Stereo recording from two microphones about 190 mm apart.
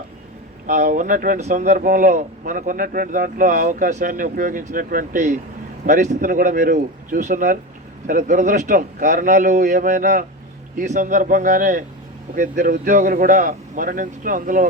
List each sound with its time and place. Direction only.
0.7 s speech: 45° right (ahead or behind)